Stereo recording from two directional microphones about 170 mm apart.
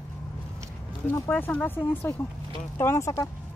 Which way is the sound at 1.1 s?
15° left (ahead or behind).